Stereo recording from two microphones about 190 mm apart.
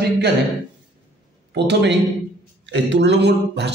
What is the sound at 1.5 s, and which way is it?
A man's voice, 65° right (ahead or behind).